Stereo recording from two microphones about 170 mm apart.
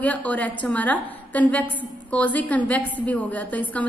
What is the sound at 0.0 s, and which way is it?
A woman's voice, 10° left (ahead or behind).